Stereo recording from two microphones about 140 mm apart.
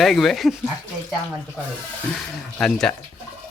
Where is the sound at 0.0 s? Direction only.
Centre (ahead or behind).